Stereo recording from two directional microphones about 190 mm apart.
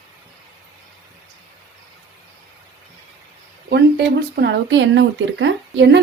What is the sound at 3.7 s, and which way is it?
Speech, 60° right (ahead or behind).